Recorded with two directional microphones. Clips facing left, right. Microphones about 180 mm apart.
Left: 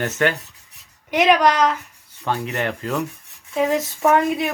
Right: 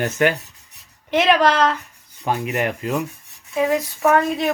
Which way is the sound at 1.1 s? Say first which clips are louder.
Even; 15° left (ahead or behind).